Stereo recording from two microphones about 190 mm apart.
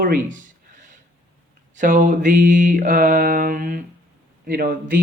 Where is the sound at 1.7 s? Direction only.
40° right (ahead or behind).